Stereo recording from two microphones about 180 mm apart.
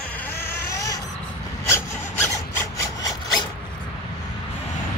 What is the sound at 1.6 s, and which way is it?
Wood, 15° left (ahead or behind).